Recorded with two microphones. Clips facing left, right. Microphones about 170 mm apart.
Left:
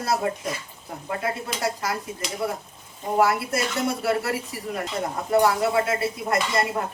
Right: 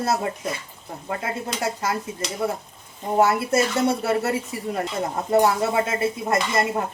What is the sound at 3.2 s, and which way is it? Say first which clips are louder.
A woman's voice: right 3 dB; 25° right (ahead or behind).